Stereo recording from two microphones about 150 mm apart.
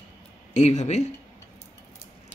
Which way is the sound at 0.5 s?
50° left (ahead or behind).